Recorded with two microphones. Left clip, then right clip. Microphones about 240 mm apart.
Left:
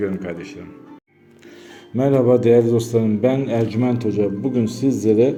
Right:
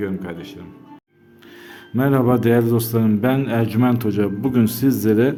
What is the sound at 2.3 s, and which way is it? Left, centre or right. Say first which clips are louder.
Speech: left 4 dB; right.